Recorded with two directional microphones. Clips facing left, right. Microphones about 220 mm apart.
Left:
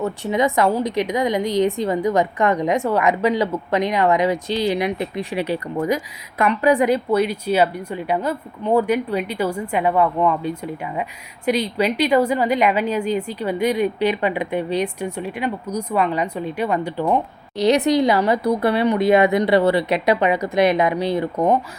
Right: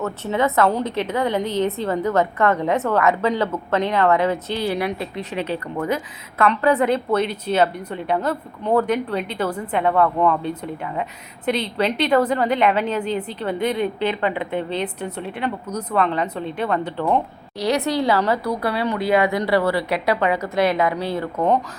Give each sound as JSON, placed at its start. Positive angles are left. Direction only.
{"t": 0.0, "sound": "a woman's voice", "side_deg": 15}